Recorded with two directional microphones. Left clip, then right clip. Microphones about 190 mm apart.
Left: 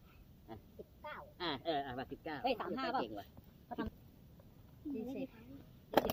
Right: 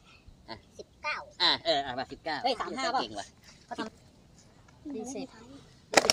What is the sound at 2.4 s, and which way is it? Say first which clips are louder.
Speech: right 6 dB; 10° right (ahead or behind).